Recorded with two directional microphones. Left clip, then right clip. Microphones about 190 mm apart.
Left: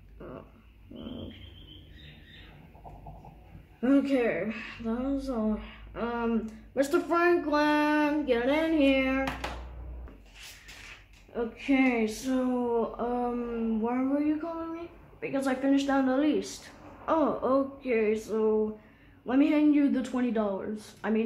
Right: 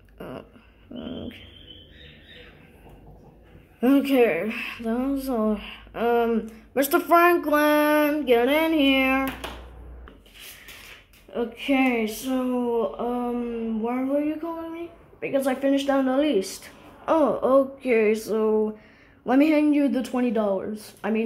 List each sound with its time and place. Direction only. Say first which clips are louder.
3.8 s speech: right 6 dB; 35° right (ahead or behind)
11.3 s speech: right 4 dB; 30° right (ahead or behind)
17.8 s speech: right 6 dB; 35° right (ahead or behind)